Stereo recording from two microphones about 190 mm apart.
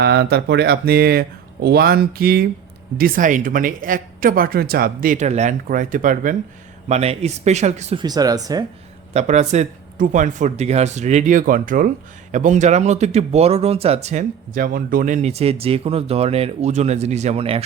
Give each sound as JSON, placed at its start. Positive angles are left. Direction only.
{"t": 0.0, "sound": "speech", "side_deg": -60}
{"t": 7.9, "sound": "speech", "side_deg": -20}
{"t": 9.1, "sound": "speech", "side_deg": -35}